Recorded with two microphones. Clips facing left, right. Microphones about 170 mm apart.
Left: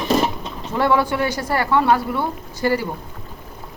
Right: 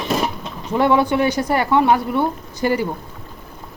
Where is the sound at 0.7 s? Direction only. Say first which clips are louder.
Right 3 dB; 20° right (ahead or behind).